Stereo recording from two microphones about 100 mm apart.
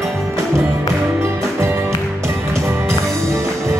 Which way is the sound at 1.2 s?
30° right (ahead or behind).